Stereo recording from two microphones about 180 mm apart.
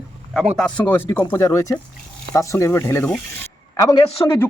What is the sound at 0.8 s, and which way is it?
A man's voice, 10° left (ahead or behind).